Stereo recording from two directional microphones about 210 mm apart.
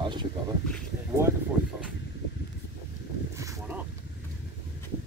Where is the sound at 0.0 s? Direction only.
20° right (ahead or behind).